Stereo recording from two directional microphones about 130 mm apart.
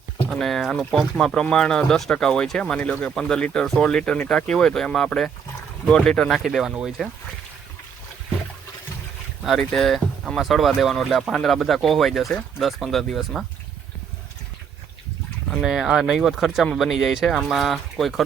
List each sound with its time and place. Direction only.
0.3 s speech: centre (ahead or behind)
9.4 s speech: centre (ahead or behind)
15.6 s speech: 5° right (ahead or behind)